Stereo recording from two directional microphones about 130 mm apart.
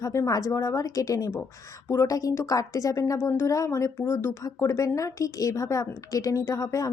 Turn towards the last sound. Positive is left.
turn(degrees=25)  # may be behind; listen again after turning